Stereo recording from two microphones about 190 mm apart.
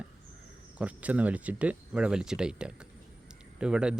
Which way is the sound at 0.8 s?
5° right (ahead or behind).